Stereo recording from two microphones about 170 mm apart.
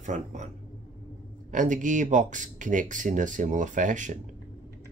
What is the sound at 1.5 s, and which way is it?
Speech, 50° right (ahead or behind).